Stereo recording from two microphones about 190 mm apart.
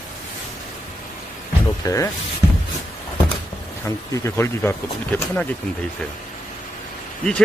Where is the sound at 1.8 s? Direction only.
15° left (ahead or behind).